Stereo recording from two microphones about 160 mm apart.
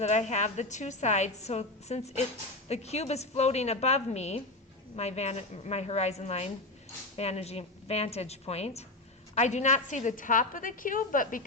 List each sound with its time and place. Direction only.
0.0 s a woman's voice: 45° left (ahead or behind)